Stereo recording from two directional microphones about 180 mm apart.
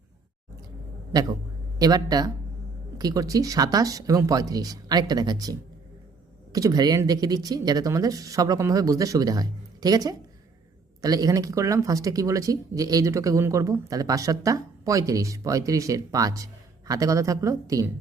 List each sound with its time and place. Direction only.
1.1 s speech: 20° right (ahead or behind)